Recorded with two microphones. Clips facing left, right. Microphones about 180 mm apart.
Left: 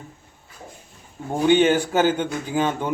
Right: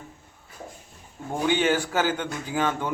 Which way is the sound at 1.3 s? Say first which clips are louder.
Left 6 dB; 20° left (ahead or behind).